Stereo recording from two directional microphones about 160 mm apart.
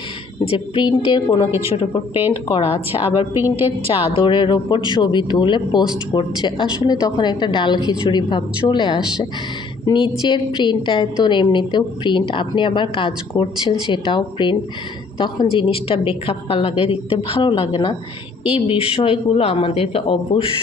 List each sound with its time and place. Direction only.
0.4 s a woman's voice: 30° left (ahead or behind)
1.5 s a woman's voice: 15° right (ahead or behind)
1.7 s a woman's voice: 35° left (ahead or behind)
2.1 s a woman's voice: 10° right (ahead or behind)
2.5 s a woman's voice: 40° left (ahead or behind)
3.3 s a woman's voice: 10° right (ahead or behind)
3.9 s a woman's voice: 35° left (ahead or behind)